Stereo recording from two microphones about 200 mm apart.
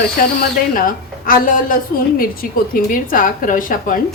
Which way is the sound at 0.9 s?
45° left (ahead or behind).